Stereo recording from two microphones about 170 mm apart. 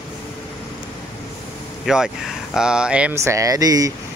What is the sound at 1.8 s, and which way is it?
Speech, centre (ahead or behind).